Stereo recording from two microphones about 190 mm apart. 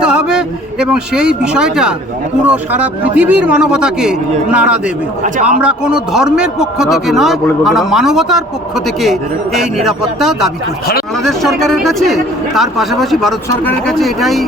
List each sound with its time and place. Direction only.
0.0 s a man's voice: 5° right (ahead or behind)
5.2 s a man's voice: 40° right (ahead or behind)
5.5 s speech: 5° right (ahead or behind)